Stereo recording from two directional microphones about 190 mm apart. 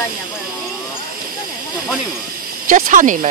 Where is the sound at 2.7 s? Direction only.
45° right (ahead or behind).